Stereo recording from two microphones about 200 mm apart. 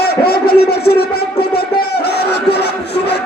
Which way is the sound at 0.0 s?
50° left (ahead or behind).